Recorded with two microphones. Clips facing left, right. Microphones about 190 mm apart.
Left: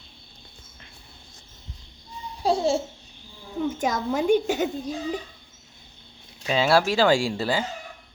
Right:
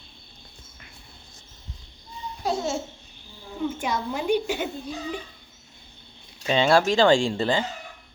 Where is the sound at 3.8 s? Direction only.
45° left (ahead or behind).